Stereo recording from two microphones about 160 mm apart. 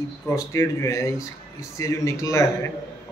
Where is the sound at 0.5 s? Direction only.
20° left (ahead or behind).